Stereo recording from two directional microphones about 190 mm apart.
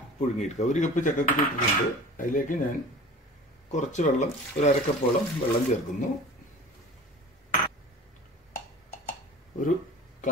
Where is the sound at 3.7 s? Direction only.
40° left (ahead or behind).